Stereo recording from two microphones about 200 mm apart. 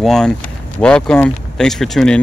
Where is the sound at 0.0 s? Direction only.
Centre (ahead or behind).